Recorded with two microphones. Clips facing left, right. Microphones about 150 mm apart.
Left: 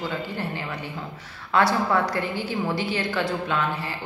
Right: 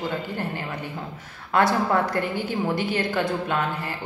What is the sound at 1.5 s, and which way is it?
A woman's voice, 50° right (ahead or behind).